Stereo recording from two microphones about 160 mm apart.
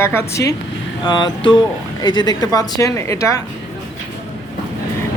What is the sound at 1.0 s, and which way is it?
Speech, 30° left (ahead or behind).